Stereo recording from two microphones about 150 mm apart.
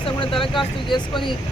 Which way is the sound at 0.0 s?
35° left (ahead or behind).